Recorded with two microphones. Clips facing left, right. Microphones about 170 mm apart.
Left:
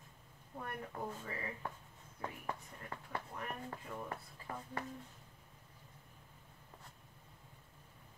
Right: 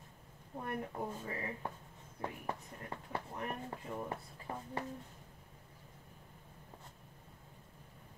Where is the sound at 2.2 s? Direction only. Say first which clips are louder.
Right 2 dB; 20° right (ahead or behind).